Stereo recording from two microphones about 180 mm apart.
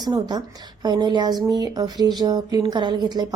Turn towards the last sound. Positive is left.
turn(degrees=-25)  # may be behind; listen again after turning